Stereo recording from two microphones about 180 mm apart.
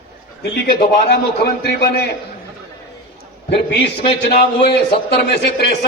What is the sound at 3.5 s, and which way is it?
A man's voice, 65° left (ahead or behind).